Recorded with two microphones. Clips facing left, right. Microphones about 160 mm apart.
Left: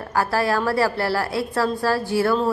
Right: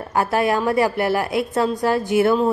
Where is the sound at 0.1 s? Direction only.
20° right (ahead or behind).